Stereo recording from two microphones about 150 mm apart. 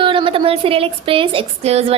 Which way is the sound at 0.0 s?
35° right (ahead or behind).